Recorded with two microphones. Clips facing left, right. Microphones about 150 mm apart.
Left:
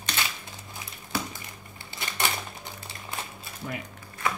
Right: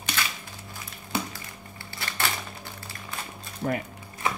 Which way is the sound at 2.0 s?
20° left (ahead or behind).